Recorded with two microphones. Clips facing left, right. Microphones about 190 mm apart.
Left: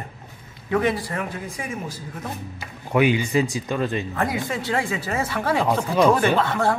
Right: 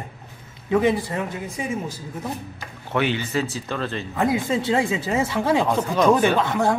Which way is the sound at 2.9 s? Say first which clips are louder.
Left 4 dB; 10° left (ahead or behind).